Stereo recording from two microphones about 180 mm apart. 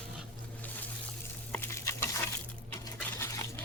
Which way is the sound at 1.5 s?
15° left (ahead or behind).